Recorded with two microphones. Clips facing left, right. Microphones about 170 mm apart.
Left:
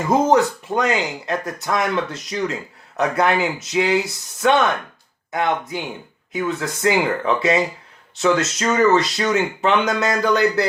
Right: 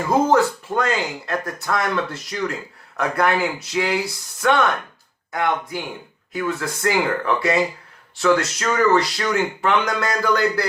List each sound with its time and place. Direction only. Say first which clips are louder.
0.0 s speech: left 1 dB; 20° left (ahead or behind)